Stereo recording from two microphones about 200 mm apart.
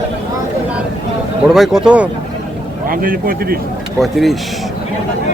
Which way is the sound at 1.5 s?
Centre (ahead or behind).